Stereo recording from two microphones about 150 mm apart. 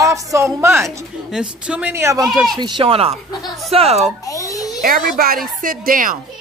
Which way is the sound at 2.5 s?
30° right (ahead or behind).